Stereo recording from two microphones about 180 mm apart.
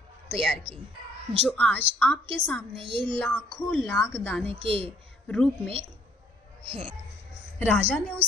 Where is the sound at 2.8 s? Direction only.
30° right (ahead or behind).